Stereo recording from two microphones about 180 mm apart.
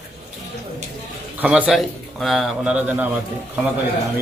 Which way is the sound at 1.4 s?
5° right (ahead or behind).